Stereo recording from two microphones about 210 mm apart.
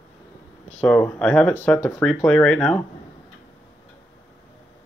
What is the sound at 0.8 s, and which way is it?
Speech, 5° left (ahead or behind).